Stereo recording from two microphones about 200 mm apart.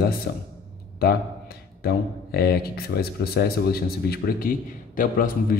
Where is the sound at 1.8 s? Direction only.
50° left (ahead or behind).